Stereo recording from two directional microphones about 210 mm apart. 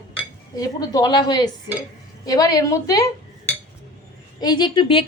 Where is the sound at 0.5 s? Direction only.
15° left (ahead or behind).